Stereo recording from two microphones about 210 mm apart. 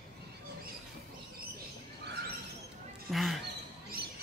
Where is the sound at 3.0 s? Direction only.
Centre (ahead or behind).